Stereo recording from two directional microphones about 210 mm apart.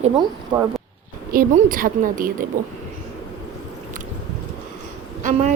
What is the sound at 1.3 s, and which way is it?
A woman's voice, 40° right (ahead or behind).